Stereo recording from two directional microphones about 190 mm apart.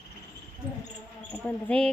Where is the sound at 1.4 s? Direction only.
5° left (ahead or behind).